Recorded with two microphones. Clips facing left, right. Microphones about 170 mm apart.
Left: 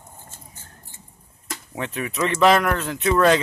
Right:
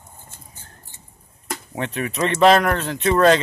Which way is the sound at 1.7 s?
55° right (ahead or behind).